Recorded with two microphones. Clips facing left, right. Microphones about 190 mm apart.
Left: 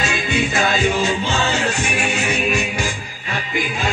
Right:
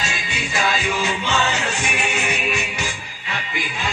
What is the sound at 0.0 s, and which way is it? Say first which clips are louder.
Music: left 8 dB; 55° left (ahead or behind).